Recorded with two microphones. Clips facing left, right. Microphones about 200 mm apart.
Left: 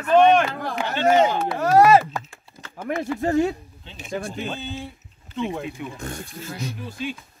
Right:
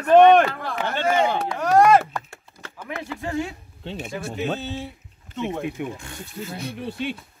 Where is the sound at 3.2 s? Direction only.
40° left (ahead or behind).